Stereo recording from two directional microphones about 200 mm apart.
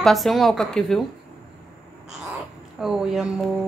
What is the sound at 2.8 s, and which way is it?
Speech, centre (ahead or behind).